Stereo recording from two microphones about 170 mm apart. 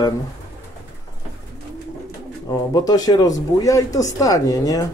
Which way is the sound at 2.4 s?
20° left (ahead or behind).